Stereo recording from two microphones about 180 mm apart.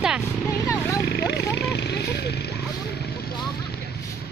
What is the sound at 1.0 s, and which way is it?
Vehicle, 70° left (ahead or behind).